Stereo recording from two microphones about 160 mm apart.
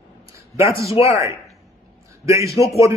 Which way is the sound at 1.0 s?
20° right (ahead or behind).